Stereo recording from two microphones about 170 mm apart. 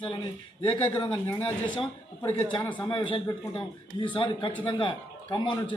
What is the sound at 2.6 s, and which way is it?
Speech, 10° left (ahead or behind).